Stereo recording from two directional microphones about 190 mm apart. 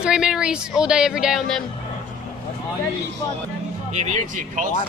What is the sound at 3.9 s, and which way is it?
Speech, 40° right (ahead or behind).